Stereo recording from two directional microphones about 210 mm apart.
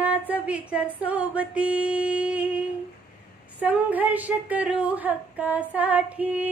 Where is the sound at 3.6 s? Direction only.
5° right (ahead or behind).